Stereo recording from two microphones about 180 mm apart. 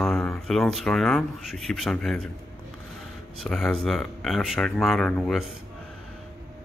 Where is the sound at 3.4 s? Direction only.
Centre (ahead or behind).